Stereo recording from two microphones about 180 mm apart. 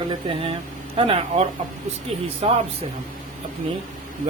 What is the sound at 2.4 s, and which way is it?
Mantra, 35° right (ahead or behind).